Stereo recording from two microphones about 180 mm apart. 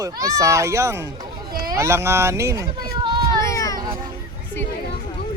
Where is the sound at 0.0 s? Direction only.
20° right (ahead or behind).